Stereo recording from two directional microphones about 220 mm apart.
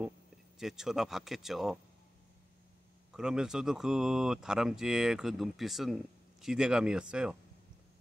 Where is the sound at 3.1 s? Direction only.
5° right (ahead or behind).